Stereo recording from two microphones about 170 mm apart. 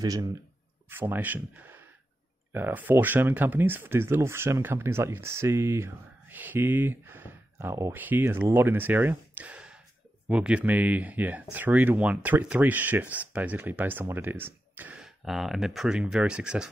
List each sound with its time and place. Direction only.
0.0 s speech: 20° right (ahead or behind); by 16.6 s 5° right (ahead or behind)